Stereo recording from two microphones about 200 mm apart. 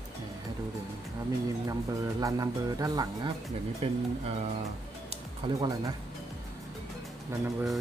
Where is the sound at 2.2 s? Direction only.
15° right (ahead or behind).